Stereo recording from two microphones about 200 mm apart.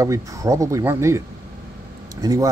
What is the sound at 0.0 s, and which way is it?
Speech, 15° right (ahead or behind).